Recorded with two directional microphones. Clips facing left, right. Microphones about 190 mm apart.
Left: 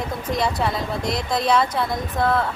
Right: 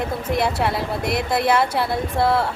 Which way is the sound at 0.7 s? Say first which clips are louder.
Right 2 dB; 60° right (ahead or behind).